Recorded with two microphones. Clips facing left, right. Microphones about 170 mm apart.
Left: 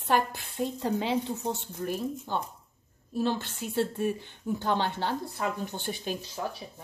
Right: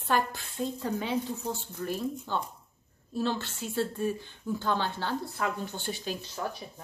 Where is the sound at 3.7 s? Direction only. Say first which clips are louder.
Left 2 dB; 25° left (ahead or behind).